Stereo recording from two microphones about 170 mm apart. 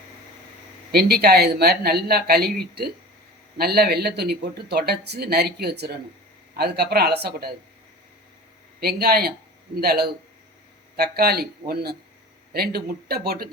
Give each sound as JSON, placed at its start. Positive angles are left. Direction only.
{"t": 0.9, "sound": "speech", "side_deg": -70}
{"t": 3.6, "sound": "speech", "side_deg": -70}
{"t": 8.8, "sound": "speech", "side_deg": -70}